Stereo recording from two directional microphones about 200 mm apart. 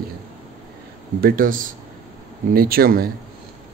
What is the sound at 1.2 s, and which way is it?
Speech, 45° right (ahead or behind).